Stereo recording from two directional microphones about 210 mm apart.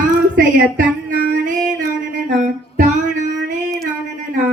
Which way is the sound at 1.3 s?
40° right (ahead or behind).